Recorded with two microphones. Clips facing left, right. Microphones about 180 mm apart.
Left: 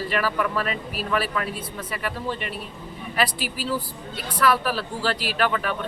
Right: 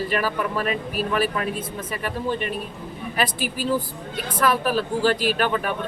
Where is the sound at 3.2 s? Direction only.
45° right (ahead or behind).